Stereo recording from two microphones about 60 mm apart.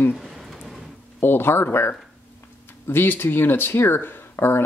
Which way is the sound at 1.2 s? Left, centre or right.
Left.